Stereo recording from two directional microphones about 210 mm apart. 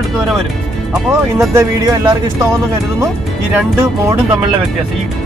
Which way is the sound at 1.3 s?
15° right (ahead or behind).